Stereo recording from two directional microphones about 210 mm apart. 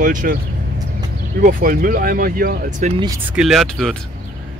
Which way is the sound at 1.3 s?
40° right (ahead or behind).